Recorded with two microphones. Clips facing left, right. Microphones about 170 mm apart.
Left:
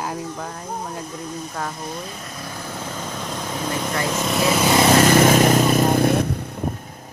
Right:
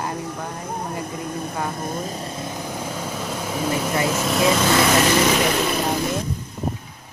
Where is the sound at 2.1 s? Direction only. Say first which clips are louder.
Right 4 dB; 25° right (ahead or behind); by 4.4 s 5° right (ahead or behind).